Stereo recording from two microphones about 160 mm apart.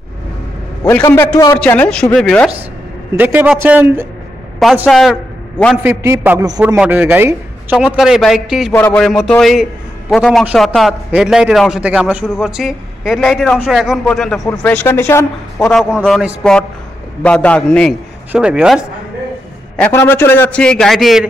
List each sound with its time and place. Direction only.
0.8 s a man's voice: 15° left (ahead or behind)
3.2 s a man's voice: 10° right (ahead or behind)
4.8 s a man's voice: centre (ahead or behind)
5.8 s a man's voice: 15° right (ahead or behind)
6.8 s a man's voice: 10° right (ahead or behind)
8.7 s a man's voice: 10° left (ahead or behind)
15.9 s a man's voice: 5° right (ahead or behind)
17.2 s a man's voice: 10° left (ahead or behind)
19.8 s a man's voice: 15° left (ahead or behind); by 21.3 s centre (ahead or behind)